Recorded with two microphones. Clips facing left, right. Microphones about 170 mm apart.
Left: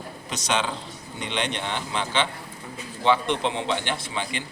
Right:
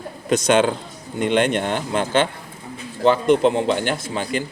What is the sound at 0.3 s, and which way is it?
A man's voice, 50° right (ahead or behind).